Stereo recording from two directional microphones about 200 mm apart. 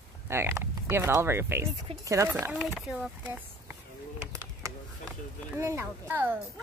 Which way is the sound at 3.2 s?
10° right (ahead or behind).